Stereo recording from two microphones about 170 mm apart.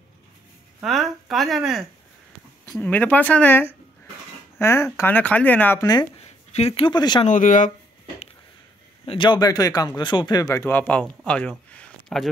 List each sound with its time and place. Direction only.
0.8 s a woman's voice: centre (ahead or behind)
2.6 s speech: 15° left (ahead or behind)
6.2 s speech: 40° left (ahead or behind)
7.2 s speech: 50° left (ahead or behind)
9.0 s speech: 30° left (ahead or behind)
10.6 s speech: 10° left (ahead or behind)